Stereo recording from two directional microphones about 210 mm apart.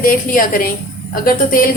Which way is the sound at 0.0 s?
40° left (ahead or behind).